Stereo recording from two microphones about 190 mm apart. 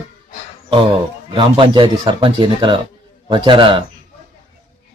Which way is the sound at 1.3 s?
25° right (ahead or behind).